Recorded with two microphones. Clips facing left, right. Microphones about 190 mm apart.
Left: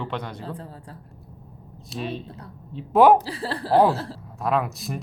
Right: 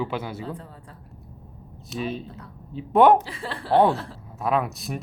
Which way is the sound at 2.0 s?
Centre (ahead or behind).